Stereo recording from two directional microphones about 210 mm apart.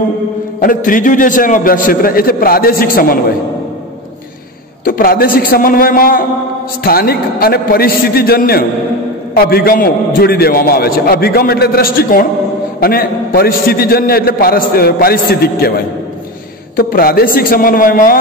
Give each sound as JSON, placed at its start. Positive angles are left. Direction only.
{"t": 0.6, "sound": "a man's voice", "side_deg": 40}
{"t": 4.8, "sound": "a man's voice", "side_deg": 45}
{"t": 16.7, "sound": "a man's voice", "side_deg": 45}